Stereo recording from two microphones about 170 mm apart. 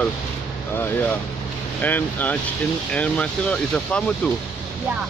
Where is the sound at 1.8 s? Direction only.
10° left (ahead or behind).